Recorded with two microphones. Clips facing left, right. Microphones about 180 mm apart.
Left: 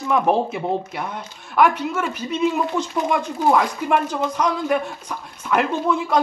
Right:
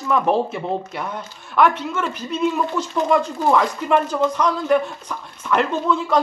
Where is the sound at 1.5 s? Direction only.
10° left (ahead or behind).